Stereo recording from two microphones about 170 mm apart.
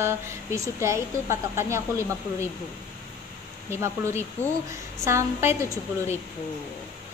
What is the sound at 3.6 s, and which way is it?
A woman's voice, 15° right (ahead or behind).